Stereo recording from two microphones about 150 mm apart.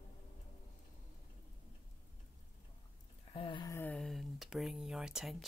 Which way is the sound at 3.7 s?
10° left (ahead or behind).